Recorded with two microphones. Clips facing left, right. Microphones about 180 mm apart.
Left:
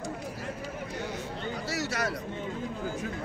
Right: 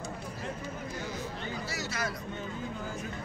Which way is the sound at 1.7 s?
75° left (ahead or behind).